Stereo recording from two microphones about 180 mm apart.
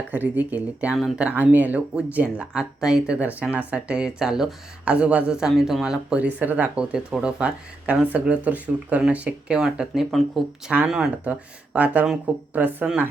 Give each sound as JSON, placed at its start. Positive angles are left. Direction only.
{"t": 0.1, "sound": "speech", "side_deg": -10}